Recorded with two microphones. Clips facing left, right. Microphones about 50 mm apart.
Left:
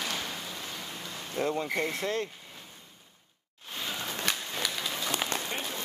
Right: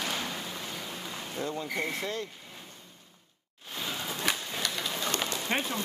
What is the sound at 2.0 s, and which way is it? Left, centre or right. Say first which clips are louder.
Speech: left 3 dB; left.